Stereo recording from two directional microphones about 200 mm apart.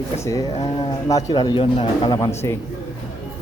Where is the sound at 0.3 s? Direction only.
15° left (ahead or behind).